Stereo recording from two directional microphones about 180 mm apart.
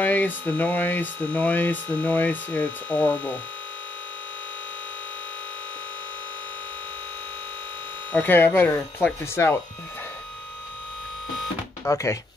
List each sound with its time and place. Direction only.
0.0 s speech: 10° left (ahead or behind)
8.1 s speech: 10° left (ahead or behind)
11.8 s speech: 15° left (ahead or behind)